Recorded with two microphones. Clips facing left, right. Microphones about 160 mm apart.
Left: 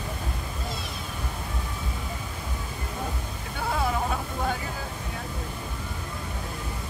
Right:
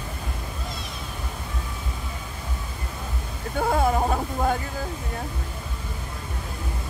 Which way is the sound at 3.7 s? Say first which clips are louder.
Right 5 dB; 45° right (ahead or behind).